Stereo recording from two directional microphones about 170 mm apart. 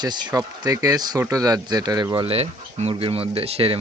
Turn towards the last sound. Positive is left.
turn(degrees=-35)  # may be behind; listen again after turning